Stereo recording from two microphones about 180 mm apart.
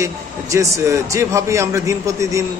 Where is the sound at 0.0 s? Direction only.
15° right (ahead or behind).